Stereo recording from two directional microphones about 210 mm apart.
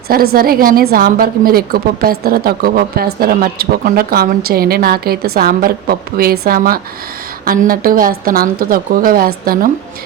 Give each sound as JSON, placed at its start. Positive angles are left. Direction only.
{"t": 0.3, "sound": "a woman's voice", "side_deg": -45}